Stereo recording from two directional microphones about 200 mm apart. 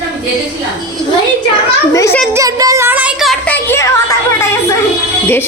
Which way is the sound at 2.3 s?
15° right (ahead or behind).